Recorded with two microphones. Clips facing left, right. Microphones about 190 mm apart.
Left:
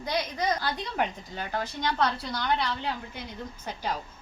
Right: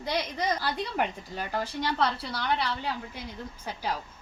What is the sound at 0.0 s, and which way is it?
A woman's voice, 5° right (ahead or behind).